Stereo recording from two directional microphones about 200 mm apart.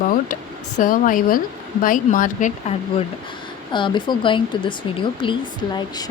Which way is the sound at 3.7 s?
25° left (ahead or behind).